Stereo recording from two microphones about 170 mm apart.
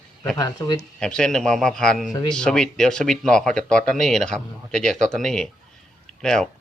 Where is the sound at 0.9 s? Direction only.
5° left (ahead or behind).